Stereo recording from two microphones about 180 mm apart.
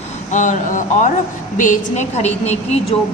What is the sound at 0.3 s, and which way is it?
A woman's voice, 45° left (ahead or behind).